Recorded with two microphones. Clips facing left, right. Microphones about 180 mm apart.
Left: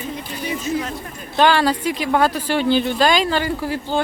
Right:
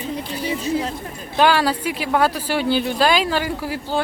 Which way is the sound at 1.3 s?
5° right (ahead or behind).